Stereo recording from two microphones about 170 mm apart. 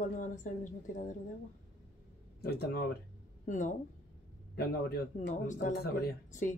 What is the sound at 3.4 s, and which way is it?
Speech, 50° left (ahead or behind).